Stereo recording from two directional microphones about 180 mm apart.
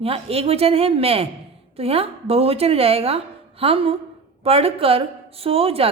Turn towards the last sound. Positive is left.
turn(degrees=-35)  # may be behind; listen again after turning